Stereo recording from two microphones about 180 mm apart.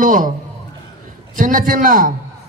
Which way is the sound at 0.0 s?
50° right (ahead or behind).